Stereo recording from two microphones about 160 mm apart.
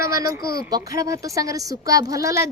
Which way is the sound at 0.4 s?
20° right (ahead or behind).